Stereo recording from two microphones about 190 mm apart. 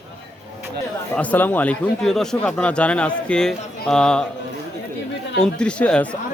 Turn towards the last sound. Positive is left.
turn(degrees=5)  # may be behind; listen again after turning